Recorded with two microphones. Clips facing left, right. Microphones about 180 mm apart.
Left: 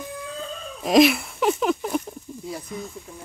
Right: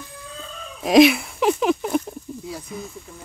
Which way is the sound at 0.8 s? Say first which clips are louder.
Right 3 dB; centre (ahead or behind).